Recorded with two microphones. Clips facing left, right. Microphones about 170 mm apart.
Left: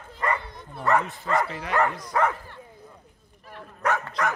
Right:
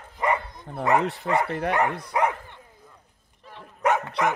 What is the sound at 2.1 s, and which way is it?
Speech, 20° right (ahead or behind).